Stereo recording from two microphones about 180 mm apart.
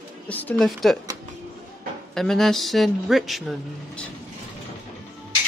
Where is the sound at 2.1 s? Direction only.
Centre (ahead or behind).